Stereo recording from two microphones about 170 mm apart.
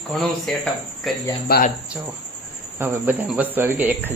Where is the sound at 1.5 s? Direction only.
65° left (ahead or behind).